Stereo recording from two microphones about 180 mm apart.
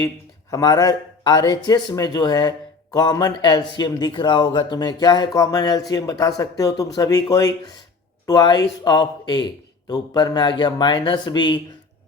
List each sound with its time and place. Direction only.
0.5 s speech: 20° left (ahead or behind)